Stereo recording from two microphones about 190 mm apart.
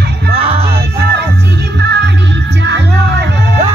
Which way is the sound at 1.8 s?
65° right (ahead or behind).